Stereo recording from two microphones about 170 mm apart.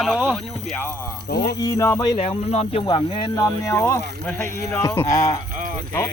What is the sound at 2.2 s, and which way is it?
Speech, 35° left (ahead or behind).